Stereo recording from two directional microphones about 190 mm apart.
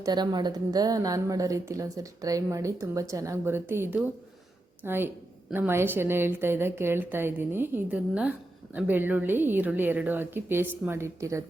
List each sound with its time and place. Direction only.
0.0 s a woman's voice: 20° right (ahead or behind)